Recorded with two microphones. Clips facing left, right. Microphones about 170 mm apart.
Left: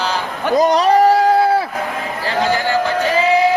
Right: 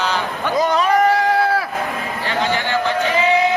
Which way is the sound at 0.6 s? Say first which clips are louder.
Left 4 dB; 40° left (ahead or behind).